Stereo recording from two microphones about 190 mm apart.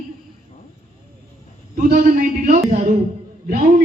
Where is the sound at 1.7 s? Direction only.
45° right (ahead or behind).